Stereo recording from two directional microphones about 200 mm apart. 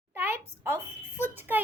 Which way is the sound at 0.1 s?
10° right (ahead or behind).